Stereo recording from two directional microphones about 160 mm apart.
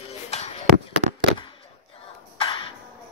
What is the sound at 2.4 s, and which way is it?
Music, 30° left (ahead or behind).